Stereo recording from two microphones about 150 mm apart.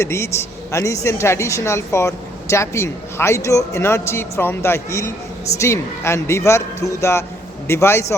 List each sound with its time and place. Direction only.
0.0 s a woman's voice: 20° left (ahead or behind)